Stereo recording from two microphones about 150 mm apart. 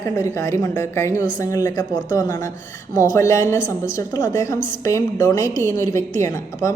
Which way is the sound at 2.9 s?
20° left (ahead or behind).